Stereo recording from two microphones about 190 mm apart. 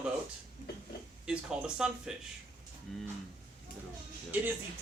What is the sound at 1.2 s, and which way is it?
Speech, 5° right (ahead or behind).